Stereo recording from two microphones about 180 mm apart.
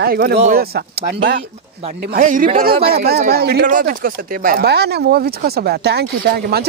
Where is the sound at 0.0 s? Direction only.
60° right (ahead or behind).